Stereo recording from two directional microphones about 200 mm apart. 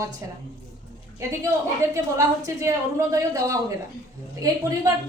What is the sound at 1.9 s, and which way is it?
A woman's voice, 15° right (ahead or behind).